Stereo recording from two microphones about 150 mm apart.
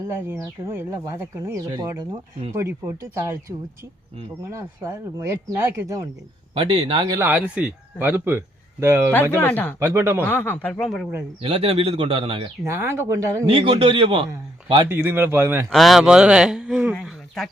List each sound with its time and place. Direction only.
0.3 s speech: 15° right (ahead or behind)
4.5 s speech: 20° right (ahead or behind)
6.5 s a man's voice: 35° right (ahead or behind)
7.2 s speech: 10° right (ahead or behind)
9.4 s speech: 10° left (ahead or behind)
9.8 s speech: 15° right (ahead or behind)
10.2 s speech: 15° left (ahead or behind)
11.4 s a man's voice: 40° right (ahead or behind)
12.6 s speech: 15° right (ahead or behind)
13.5 s a man's voice: 35° right (ahead or behind)
14.8 s speech: 15° right (ahead or behind)
15.7 s speech: centre (ahead or behind)